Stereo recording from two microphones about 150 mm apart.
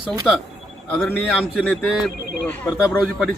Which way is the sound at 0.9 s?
15° left (ahead or behind).